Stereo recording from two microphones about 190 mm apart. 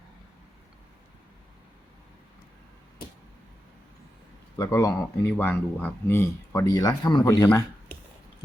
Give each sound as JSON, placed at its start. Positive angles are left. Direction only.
{"t": 4.5, "sound": "speech", "side_deg": 15}